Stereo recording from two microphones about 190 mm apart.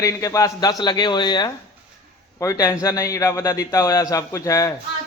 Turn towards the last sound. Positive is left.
turn(degrees=15)  # may be behind; listen again after turning